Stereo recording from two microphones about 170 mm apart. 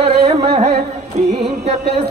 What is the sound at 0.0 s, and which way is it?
Carnatic music, 40° right (ahead or behind).